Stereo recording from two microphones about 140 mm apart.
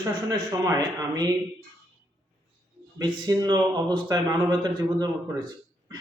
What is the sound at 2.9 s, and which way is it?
Speech, 30° right (ahead or behind).